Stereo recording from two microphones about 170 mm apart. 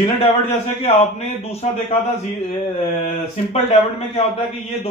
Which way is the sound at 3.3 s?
35° left (ahead or behind).